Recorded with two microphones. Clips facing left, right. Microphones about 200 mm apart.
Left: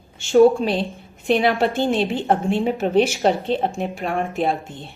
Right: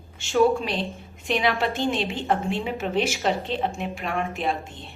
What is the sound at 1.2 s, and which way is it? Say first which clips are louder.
A woman's voice: left 6 dB; 40° left (ahead or behind).